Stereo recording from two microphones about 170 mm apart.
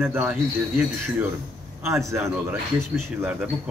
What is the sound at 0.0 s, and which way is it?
Speech, 15° right (ahead or behind).